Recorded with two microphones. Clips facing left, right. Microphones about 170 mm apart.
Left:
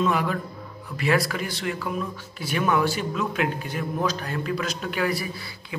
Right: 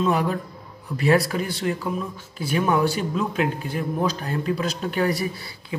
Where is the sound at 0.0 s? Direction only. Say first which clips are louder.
Right 2 dB; 35° right (ahead or behind).